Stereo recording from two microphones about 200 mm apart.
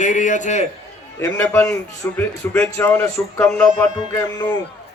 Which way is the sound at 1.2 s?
10° left (ahead or behind).